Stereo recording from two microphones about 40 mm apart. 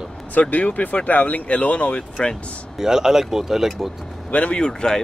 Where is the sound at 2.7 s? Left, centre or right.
Centre.